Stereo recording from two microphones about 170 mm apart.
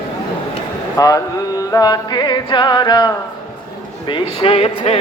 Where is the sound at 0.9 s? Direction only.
20° left (ahead or behind).